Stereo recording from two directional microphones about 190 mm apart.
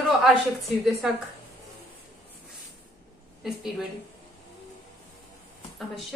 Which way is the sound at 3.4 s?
Centre (ahead or behind).